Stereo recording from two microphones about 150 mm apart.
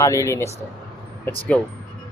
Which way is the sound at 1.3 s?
10° left (ahead or behind).